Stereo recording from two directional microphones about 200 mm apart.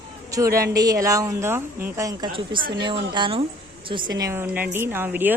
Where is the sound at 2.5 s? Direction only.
45° right (ahead or behind).